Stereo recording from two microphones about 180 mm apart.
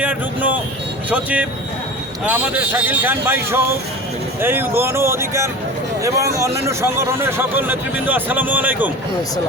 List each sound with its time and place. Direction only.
0.0 s vehicle: 10° right (ahead or behind)
1.1 s speech: 5° right (ahead or behind)